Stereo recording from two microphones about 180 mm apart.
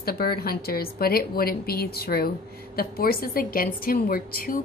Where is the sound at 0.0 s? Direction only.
60° left (ahead or behind).